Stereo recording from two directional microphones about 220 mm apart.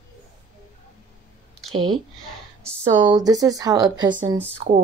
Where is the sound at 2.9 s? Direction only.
20° right (ahead or behind).